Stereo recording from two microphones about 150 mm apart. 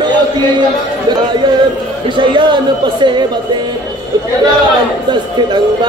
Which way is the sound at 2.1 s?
30° right (ahead or behind).